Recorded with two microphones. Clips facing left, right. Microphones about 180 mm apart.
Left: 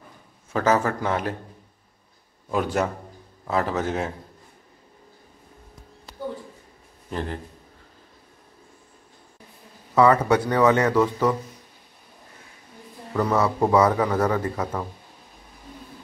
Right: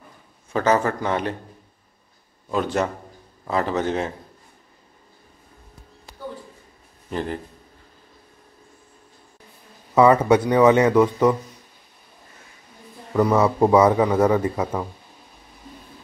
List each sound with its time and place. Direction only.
0.5 s a man's voice: 5° left (ahead or behind)
2.5 s a man's voice: 10° left (ahead or behind)
7.1 s a man's voice: centre (ahead or behind)
9.9 s a man's voice: 20° right (ahead or behind)
13.1 s a man's voice: 10° right (ahead or behind)